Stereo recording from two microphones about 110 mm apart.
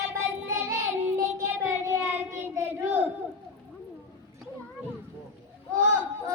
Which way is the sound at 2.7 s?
15° right (ahead or behind).